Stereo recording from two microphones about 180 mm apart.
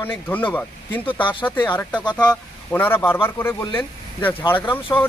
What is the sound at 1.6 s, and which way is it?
Speech, 10° left (ahead or behind).